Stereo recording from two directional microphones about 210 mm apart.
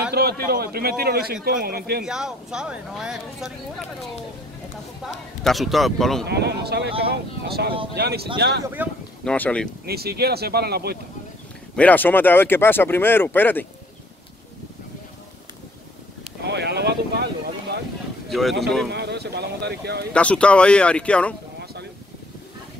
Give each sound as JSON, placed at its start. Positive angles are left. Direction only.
{"t": 0.1, "sound": "a man's voice", "side_deg": -50}
{"t": 2.0, "sound": "speech", "side_deg": -5}
{"t": 5.0, "sound": "speech", "side_deg": 0}
{"t": 6.2, "sound": "speech", "side_deg": -50}
{"t": 8.8, "sound": "speech", "side_deg": -10}
{"t": 9.2, "sound": "speech", "side_deg": 5}
{"t": 9.8, "sound": "speech", "side_deg": -50}
{"t": 11.7, "sound": "speech", "side_deg": 5}
{"t": 16.4, "sound": "boat", "side_deg": -55}
{"t": 18.3, "sound": "speech", "side_deg": 0}
{"t": 18.9, "sound": "speech", "side_deg": -50}
{"t": 20.1, "sound": "speech", "side_deg": 5}